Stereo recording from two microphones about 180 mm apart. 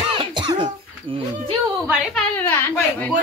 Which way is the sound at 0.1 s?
25° right (ahead or behind).